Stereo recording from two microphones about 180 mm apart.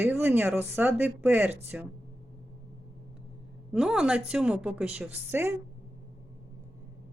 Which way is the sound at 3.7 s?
5° right (ahead or behind).